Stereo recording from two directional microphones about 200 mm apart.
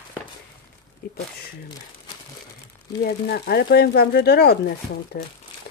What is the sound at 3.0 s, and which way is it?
Speech, 55° left (ahead or behind).